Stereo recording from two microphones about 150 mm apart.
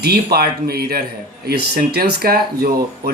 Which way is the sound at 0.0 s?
90° right.